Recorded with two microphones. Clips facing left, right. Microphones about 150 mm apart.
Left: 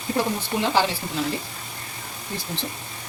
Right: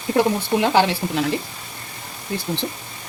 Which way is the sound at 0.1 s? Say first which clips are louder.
Right 7 dB; 65° right (ahead or behind).